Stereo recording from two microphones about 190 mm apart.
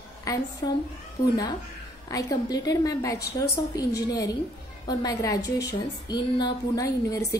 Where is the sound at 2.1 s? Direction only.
20° left (ahead or behind).